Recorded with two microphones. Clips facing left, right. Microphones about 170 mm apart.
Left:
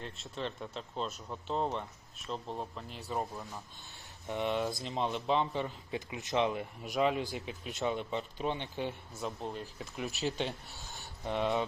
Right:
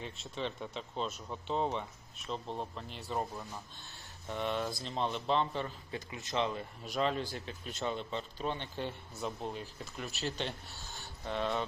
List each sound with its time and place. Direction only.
0.0 s speech: centre (ahead or behind)
4.3 s speech: 20° left (ahead or behind)
8.9 s speech: centre (ahead or behind)
11.3 s speech: 15° left (ahead or behind)